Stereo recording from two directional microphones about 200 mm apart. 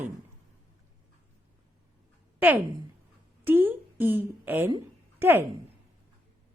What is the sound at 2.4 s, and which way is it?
A woman's voice, 10° right (ahead or behind).